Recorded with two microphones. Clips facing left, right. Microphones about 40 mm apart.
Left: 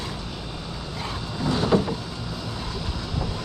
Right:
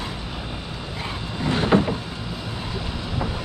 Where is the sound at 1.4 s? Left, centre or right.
Right.